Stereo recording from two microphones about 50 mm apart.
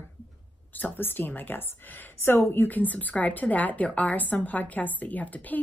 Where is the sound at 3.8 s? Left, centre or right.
Left.